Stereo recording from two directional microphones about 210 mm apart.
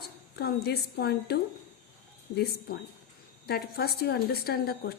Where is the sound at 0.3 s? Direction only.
50° left (ahead or behind).